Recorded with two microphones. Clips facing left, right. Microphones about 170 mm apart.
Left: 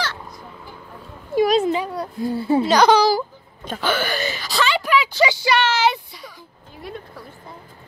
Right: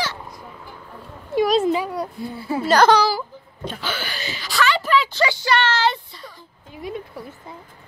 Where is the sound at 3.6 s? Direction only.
50° left (ahead or behind).